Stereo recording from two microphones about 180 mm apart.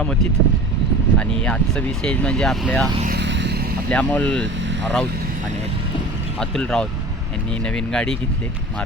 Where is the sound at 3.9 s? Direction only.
5° left (ahead or behind).